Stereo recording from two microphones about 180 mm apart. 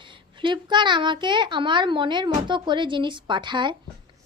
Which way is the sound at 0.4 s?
25° right (ahead or behind).